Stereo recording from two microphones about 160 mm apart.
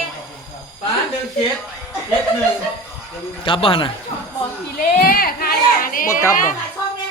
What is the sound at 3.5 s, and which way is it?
Speech, 35° left (ahead or behind).